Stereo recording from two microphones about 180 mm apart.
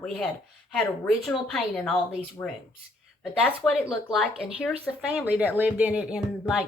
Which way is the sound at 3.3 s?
5° right (ahead or behind).